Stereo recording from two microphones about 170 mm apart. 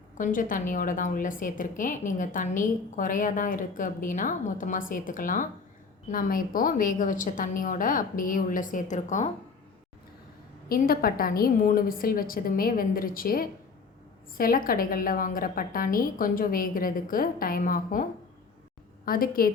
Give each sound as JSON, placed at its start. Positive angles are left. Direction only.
{"t": 0.2, "sound": "a woman's voice", "side_deg": 50}
{"t": 10.7, "sound": "a woman's voice", "side_deg": 60}
{"t": 19.0, "sound": "a woman's voice", "side_deg": 60}